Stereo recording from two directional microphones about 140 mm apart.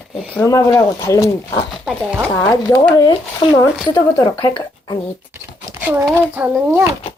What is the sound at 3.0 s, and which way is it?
Speech, 35° left (ahead or behind).